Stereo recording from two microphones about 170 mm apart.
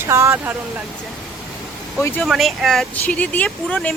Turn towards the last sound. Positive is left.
turn(degrees=5)  # may be behind; listen again after turning